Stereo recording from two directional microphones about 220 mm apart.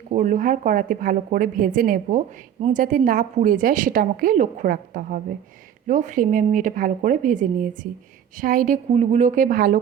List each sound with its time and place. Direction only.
0.1 s a woman's voice: 35° right (ahead or behind)